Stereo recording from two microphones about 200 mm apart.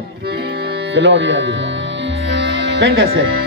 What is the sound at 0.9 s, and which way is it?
Speech, 65° right (ahead or behind).